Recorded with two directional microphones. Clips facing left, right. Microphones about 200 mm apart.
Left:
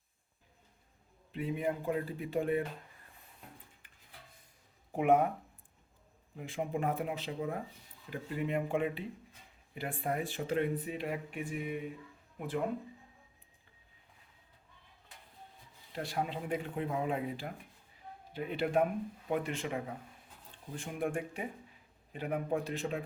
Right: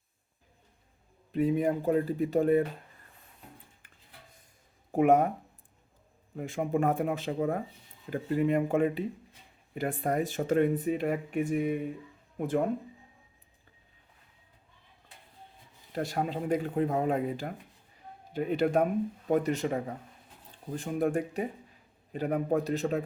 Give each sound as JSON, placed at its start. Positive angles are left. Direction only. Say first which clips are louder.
{"t": 1.3, "sound": "speech", "louder": "right 8 dB", "side_deg": -40}
{"t": 3.8, "sound": "music", "louder": "right 4 dB", "side_deg": -45}
{"t": 4.9, "sound": "speech", "louder": "right 5 dB", "side_deg": -45}
{"t": 6.3, "sound": "speech", "louder": "right 7 dB", "side_deg": -50}
{"t": 16.0, "sound": "speech", "louder": "right 5 dB", "side_deg": -45}